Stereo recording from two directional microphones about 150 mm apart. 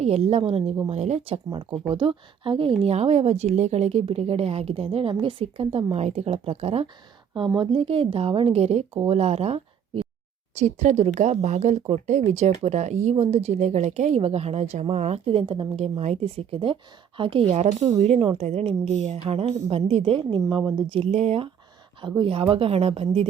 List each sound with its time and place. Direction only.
0.0 s speech: 45° right (ahead or behind)
7.3 s speech: 30° right (ahead or behind)